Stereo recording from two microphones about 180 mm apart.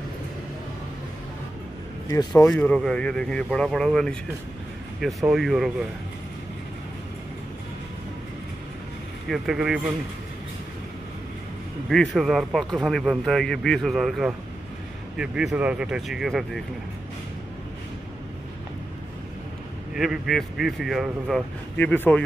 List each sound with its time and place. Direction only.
2.0 s speech: 20° left (ahead or behind)
2.5 s speech: 5° left (ahead or behind)
9.3 s speech: centre (ahead or behind)
11.9 s speech: centre (ahead or behind)
19.9 s speech: centre (ahead or behind)
21.7 s speech: 10° left (ahead or behind)